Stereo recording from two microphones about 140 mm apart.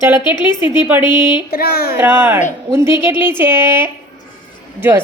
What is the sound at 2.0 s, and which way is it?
Speech, 15° right (ahead or behind).